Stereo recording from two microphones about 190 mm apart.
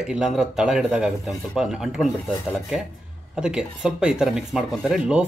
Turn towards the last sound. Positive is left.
turn(degrees=-5)  # may be behind; listen again after turning